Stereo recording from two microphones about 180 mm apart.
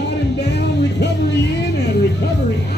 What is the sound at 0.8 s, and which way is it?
Speech, 70° left (ahead or behind).